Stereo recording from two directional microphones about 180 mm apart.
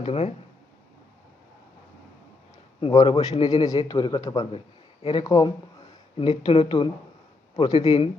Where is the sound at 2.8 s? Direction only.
20° left (ahead or behind).